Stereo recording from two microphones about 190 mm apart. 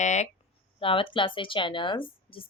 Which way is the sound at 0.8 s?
25° left (ahead or behind).